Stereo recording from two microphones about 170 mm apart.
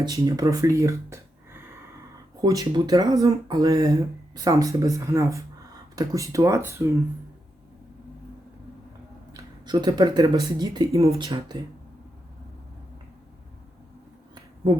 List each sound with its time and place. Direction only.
0.0 s speech: 25° right (ahead or behind)
2.4 s speech: 20° right (ahead or behind)
9.3 s speech: 25° right (ahead or behind)